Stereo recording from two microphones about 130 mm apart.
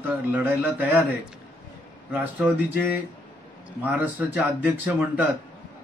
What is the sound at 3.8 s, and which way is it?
Speech, 10° right (ahead or behind).